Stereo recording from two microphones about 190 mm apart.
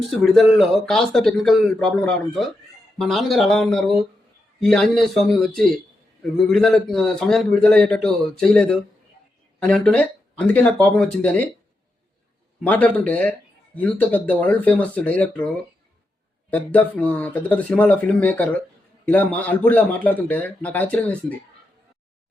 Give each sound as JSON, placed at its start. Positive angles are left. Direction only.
{"t": 0.2, "sound": "a man's voice", "side_deg": 0}
{"t": 12.6, "sound": "a man's voice", "side_deg": 10}
{"t": 16.5, "sound": "a man's voice", "side_deg": 10}